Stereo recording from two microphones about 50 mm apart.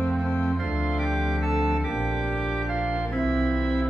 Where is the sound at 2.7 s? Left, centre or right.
Centre.